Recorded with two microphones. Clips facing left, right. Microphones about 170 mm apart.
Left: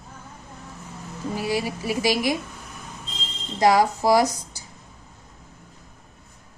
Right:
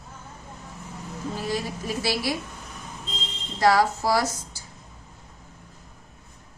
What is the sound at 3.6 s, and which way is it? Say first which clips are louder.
A woman's voice: left 2 dB; 15° left (ahead or behind).